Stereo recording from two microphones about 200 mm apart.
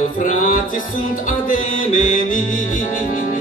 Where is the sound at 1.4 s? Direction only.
40° left (ahead or behind).